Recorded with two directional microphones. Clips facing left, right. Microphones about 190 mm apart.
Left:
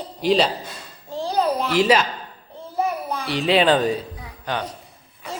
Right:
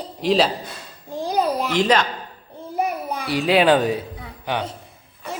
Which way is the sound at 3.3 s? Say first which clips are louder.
Right 1 dB; centre (ahead or behind).